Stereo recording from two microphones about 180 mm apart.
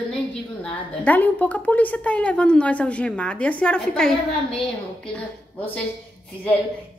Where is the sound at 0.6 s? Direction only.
10° left (ahead or behind).